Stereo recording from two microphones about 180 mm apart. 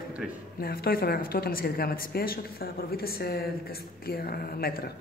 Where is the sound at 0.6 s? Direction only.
55° left (ahead or behind).